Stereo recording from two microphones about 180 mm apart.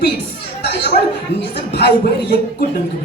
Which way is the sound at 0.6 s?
70° left (ahead or behind).